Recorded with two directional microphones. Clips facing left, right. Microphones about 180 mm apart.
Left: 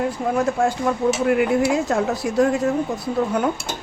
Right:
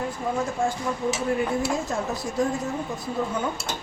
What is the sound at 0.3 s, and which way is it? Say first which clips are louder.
Speech: left 7 dB; 75° left (ahead or behind).